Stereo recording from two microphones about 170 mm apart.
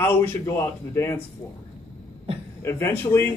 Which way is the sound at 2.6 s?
15° left (ahead or behind).